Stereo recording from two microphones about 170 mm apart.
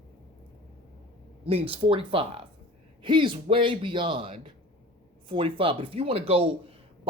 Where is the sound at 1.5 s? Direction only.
35° right (ahead or behind).